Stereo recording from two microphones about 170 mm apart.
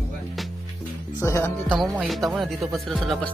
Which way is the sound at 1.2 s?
15° left (ahead or behind).